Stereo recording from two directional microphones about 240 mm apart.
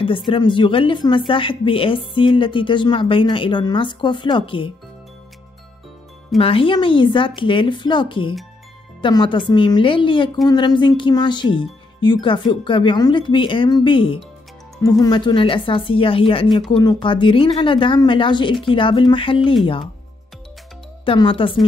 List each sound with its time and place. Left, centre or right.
0.3 s a woman's voice: centre
6.3 s a woman's voice: left
21.0 s speech: left